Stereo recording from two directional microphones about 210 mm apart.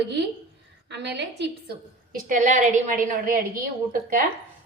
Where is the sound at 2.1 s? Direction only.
40° right (ahead or behind).